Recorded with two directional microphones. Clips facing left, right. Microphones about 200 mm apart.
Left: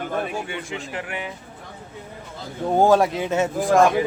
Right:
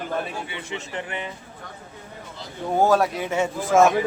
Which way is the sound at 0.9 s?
5° left (ahead or behind).